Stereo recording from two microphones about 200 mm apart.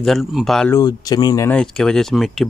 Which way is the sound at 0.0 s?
Centre (ahead or behind).